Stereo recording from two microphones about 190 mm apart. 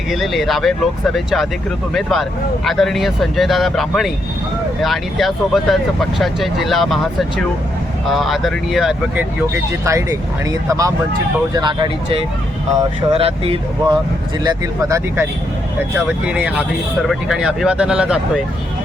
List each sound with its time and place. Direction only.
0.1 s speech: centre (ahead or behind)
8.0 s speech: centre (ahead or behind)
9.8 s speech: 15° right (ahead or behind)
14.4 s speech: 15° right (ahead or behind)